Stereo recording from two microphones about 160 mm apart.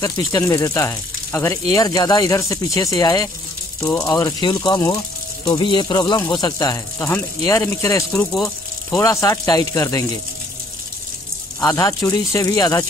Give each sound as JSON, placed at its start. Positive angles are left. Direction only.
{"t": 0.0, "sound": "speech", "side_deg": 20}
{"t": 11.6, "sound": "speech", "side_deg": 20}